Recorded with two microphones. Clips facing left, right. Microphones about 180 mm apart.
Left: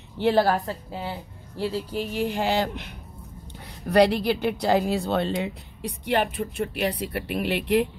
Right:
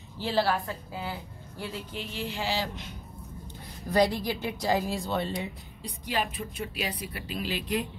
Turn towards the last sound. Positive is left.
turn(degrees=65)  # may be behind; listen again after turning